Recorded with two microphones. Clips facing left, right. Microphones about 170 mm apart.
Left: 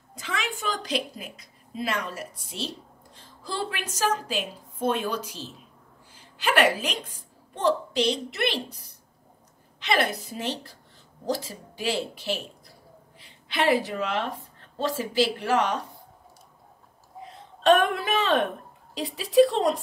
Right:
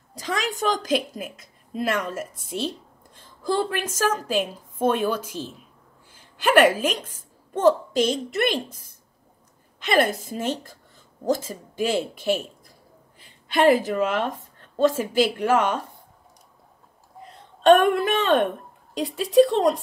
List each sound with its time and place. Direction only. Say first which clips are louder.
0.1 s a woman's voice: right 5 dB; 40° right (ahead or behind)
17.2 s a woman's voice: right 4 dB; centre (ahead or behind)